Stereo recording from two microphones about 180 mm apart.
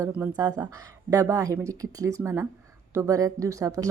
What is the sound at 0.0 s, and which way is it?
Speech, 15° right (ahead or behind).